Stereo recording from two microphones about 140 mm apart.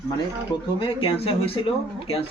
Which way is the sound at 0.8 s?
40° left (ahead or behind).